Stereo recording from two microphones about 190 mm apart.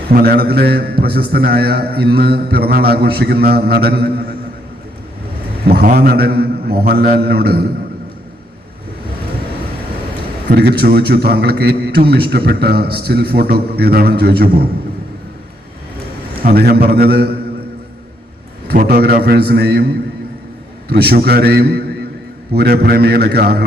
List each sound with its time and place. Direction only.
0.1 s a man's voice: 55° right (ahead or behind)
5.6 s a man's voice: 55° right (ahead or behind)
10.5 s a man's voice: 55° right (ahead or behind)
16.4 s a man's voice: 55° right (ahead or behind)
18.7 s a man's voice: 55° right (ahead or behind)
20.9 s a man's voice: 55° right (ahead or behind)